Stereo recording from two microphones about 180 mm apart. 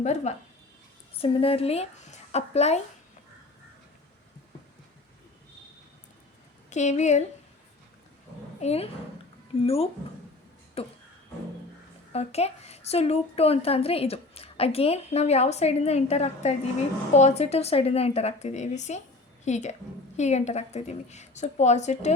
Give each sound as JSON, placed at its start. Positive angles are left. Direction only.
{"t": 0.0, "sound": "a woman's voice", "side_deg": 40}
{"t": 6.7, "sound": "a woman's voice", "side_deg": 40}
{"t": 8.6, "sound": "a woman's voice", "side_deg": 35}
{"t": 12.1, "sound": "a woman's voice", "side_deg": 35}